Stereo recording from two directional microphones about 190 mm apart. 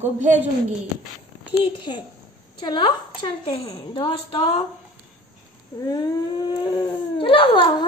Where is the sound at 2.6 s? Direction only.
25° left (ahead or behind).